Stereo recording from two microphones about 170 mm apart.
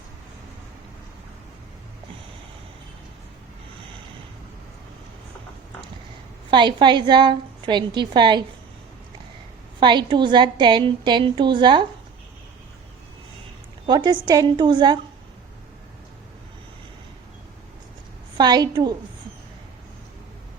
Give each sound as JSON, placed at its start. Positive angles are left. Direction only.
{"t": 6.5, "sound": "a woman's voice", "side_deg": -25}
{"t": 9.8, "sound": "a woman's voice", "side_deg": -25}
{"t": 13.8, "sound": "a woman's voice", "side_deg": -25}
{"t": 18.3, "sound": "a woman's voice", "side_deg": -25}